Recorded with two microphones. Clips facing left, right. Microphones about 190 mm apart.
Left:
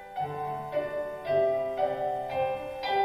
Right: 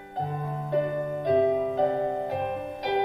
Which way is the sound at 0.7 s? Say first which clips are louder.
Right 6 dB; 50° right (ahead or behind).